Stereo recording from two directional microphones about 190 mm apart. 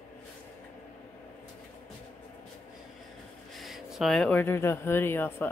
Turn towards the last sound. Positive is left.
turn(degrees=10)  # may be behind; listen again after turning